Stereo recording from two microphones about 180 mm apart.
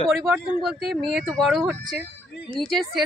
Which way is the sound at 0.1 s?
Centre (ahead or behind).